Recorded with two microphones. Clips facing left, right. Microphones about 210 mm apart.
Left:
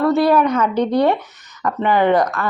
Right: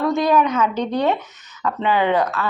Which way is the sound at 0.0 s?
5° left (ahead or behind).